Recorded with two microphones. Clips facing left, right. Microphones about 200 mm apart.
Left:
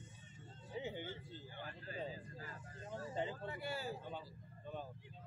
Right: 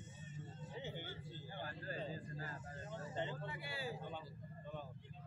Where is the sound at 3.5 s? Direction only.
45° left (ahead or behind).